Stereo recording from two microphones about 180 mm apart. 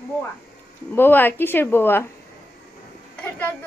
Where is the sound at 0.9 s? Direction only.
10° left (ahead or behind).